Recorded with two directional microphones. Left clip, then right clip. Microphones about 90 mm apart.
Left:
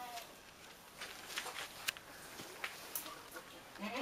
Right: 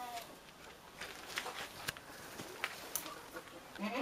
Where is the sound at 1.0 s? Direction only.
10° right (ahead or behind).